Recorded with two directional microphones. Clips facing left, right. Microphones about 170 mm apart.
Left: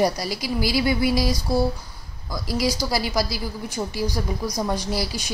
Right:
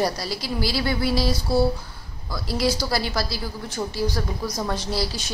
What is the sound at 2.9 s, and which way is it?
Speech, 10° left (ahead or behind).